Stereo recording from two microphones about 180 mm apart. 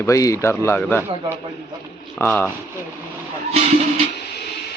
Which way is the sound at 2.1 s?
10° left (ahead or behind).